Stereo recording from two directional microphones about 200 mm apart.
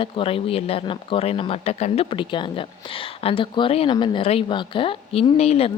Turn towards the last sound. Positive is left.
turn(degrees=30)  # may be behind; listen again after turning